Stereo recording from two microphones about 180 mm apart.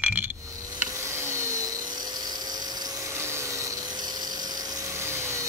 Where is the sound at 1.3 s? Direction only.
15° right (ahead or behind).